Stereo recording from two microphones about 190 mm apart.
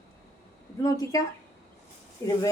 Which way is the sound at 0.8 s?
15° left (ahead or behind).